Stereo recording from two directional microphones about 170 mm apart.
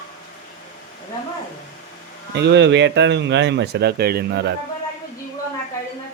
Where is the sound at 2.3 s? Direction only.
90° right; by 4.4 s 65° right (ahead or behind).